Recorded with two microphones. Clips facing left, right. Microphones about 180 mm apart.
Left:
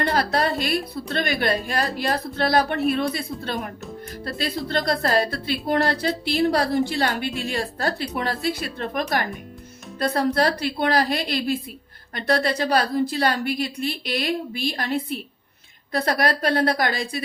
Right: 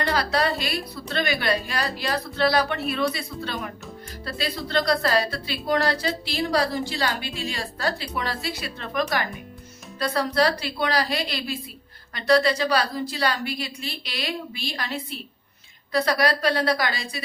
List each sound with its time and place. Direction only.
0.0 s a woman's voice: 50° left (ahead or behind)